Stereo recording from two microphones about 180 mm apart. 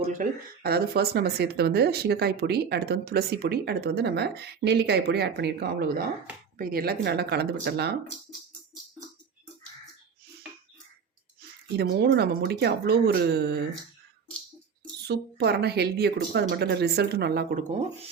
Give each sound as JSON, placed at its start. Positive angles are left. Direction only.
{"t": 0.1, "sound": "speech", "side_deg": -50}
{"t": 11.8, "sound": "speech", "side_deg": -65}
{"t": 15.0, "sound": "speech", "side_deg": -65}